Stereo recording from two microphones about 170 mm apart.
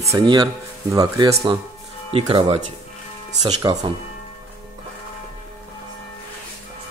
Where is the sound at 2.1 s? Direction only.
35° right (ahead or behind).